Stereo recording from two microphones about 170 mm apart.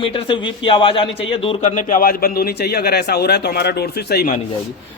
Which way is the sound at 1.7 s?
55° left (ahead or behind).